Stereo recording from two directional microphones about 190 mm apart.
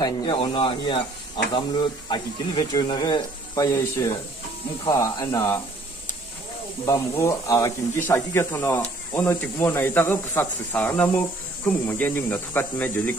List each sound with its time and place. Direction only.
0.0 s speech: 25° left (ahead or behind)
2.0 s speech: 20° left (ahead or behind)
6.9 s speech: 15° left (ahead or behind)